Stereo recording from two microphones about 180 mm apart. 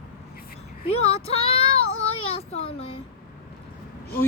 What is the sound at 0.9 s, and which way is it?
Child singing, 35° left (ahead or behind).